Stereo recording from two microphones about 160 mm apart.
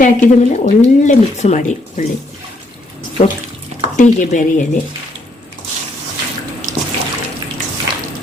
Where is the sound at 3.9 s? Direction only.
50° left (ahead or behind).